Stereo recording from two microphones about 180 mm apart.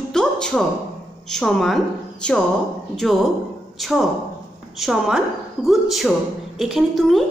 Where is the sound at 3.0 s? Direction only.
Centre (ahead or behind).